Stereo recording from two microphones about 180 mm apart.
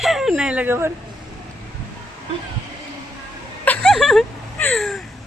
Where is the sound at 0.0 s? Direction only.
Centre (ahead or behind).